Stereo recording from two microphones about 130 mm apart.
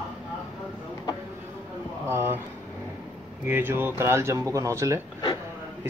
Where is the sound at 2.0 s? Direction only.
20° right (ahead or behind).